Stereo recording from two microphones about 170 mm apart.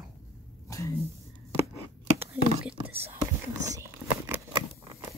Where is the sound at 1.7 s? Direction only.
15° right (ahead or behind).